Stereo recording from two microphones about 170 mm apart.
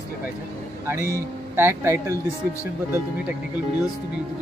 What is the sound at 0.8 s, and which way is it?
Speech, 15° right (ahead or behind).